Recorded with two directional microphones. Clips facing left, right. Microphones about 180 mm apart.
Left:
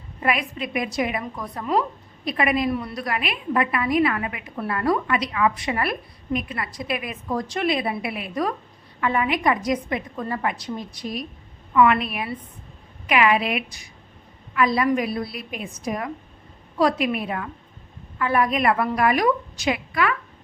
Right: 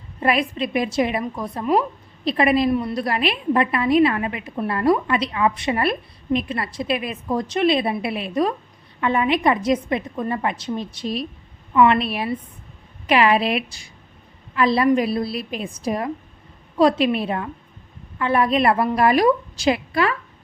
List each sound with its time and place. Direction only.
0.2 s a woman's voice: 30° right (ahead or behind)